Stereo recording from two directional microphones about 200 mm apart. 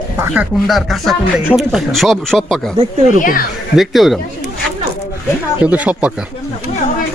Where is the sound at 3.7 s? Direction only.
Centre (ahead or behind).